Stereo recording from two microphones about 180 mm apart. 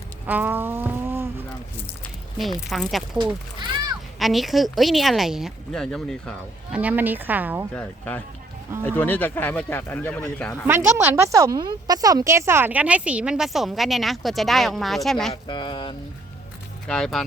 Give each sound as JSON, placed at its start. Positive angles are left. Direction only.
{"t": 0.3, "sound": "a sound", "side_deg": -10}
{"t": 2.6, "sound": "a woman's voice", "side_deg": 0}
{"t": 4.2, "sound": "a woman's voice", "side_deg": 0}
{"t": 6.7, "sound": "a woman's voice", "side_deg": -10}
{"t": 7.8, "sound": "speech", "side_deg": 10}
{"t": 10.7, "sound": "a woman's voice", "side_deg": -15}
{"t": 15.3, "sound": "speech", "side_deg": 25}
{"t": 16.8, "sound": "a woman's voice", "side_deg": 5}